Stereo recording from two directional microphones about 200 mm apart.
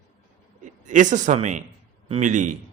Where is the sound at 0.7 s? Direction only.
40° right (ahead or behind).